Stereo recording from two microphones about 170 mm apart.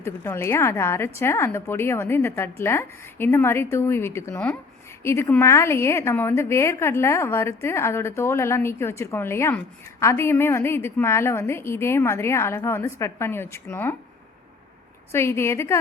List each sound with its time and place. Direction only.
0.0 s a woman's voice: 15° left (ahead or behind)
15.1 s a woman's voice: 15° left (ahead or behind)